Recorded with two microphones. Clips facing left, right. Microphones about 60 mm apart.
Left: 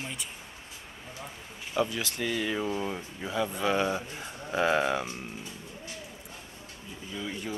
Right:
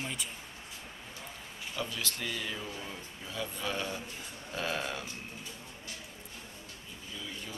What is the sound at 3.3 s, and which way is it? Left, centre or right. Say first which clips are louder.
Speech: left 9 dB; left.